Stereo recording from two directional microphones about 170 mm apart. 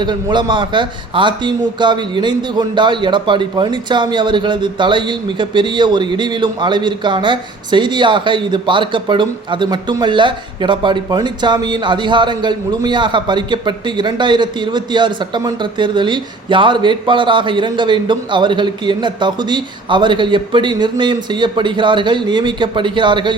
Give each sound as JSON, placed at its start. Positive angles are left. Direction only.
{"t": 0.0, "sound": "a man's voice", "side_deg": -25}